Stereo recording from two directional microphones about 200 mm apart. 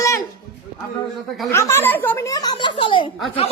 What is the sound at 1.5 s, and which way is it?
A woman's voice, 15° left (ahead or behind).